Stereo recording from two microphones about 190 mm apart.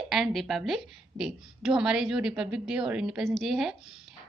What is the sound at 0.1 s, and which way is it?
A woman's voice, centre (ahead or behind).